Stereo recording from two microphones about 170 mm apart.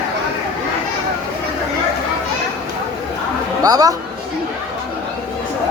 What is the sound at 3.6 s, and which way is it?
Speech, 20° right (ahead or behind).